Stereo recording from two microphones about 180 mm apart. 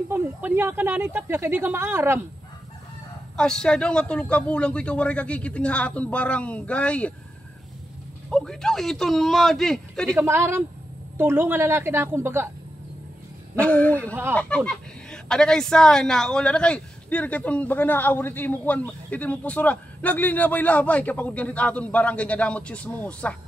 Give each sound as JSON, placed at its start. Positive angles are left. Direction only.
{"t": 0.1, "sound": "speech", "side_deg": -10}
{"t": 3.3, "sound": "speech", "side_deg": 5}
{"t": 8.3, "sound": "a man's voice", "side_deg": 5}
{"t": 10.1, "sound": "speech", "side_deg": -15}
{"t": 13.6, "sound": "speech", "side_deg": 10}